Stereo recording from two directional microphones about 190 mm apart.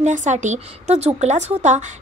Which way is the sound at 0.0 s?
40° right (ahead or behind).